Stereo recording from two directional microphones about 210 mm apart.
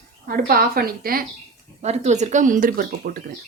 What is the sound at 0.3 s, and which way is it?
Speech, 45° right (ahead or behind).